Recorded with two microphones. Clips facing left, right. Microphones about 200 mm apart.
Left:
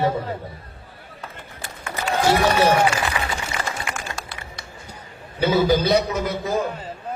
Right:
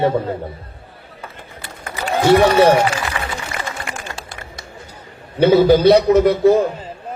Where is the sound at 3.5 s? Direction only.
55° right (ahead or behind).